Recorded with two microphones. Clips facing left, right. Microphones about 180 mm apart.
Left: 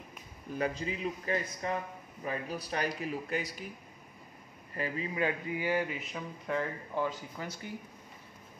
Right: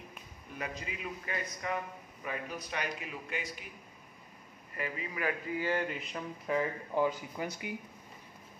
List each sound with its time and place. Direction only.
0.6 s a man's voice: 30° left (ahead or behind)
4.7 s speech: 30° left (ahead or behind); by 6.7 s 5° right (ahead or behind)
7.0 s speech: 15° right (ahead or behind)